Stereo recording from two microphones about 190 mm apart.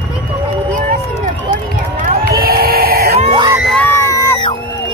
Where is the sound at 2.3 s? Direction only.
55° right (ahead or behind).